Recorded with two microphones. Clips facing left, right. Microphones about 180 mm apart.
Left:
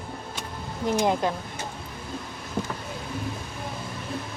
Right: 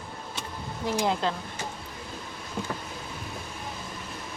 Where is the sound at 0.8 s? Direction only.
20° left (ahead or behind).